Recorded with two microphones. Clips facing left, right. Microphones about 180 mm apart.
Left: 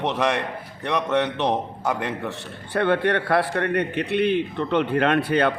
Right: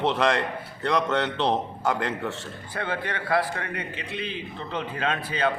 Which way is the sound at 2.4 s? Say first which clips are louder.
Left 8 dB; 65° left (ahead or behind).